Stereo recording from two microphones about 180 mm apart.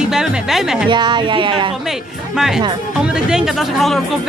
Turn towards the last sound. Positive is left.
turn(degrees=0)  # may be behind; listen again after turning